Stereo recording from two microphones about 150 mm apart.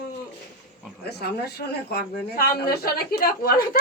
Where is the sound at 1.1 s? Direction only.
90° left.